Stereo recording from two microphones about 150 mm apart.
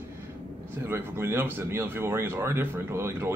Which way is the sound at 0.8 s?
15° right (ahead or behind).